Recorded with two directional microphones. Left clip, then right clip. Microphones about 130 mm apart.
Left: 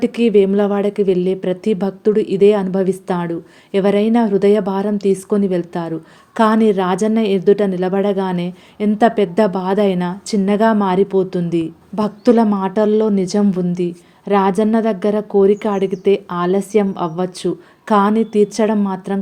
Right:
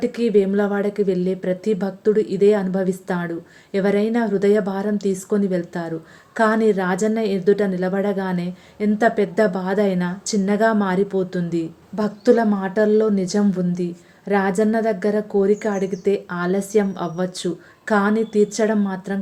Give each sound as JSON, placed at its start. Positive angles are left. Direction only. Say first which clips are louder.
{"t": 0.0, "sound": "a woman's voice", "louder": "left 5 dB", "side_deg": 25}